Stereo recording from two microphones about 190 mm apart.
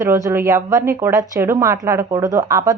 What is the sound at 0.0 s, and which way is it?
A woman's voice, 15° right (ahead or behind).